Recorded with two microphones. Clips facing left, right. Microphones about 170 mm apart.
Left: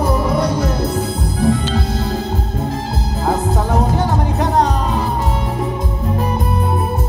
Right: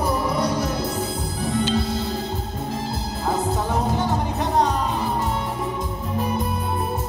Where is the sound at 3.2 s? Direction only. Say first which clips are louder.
Left 5 dB; 85° left.